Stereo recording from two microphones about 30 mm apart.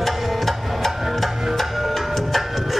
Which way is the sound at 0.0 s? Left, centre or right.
Centre.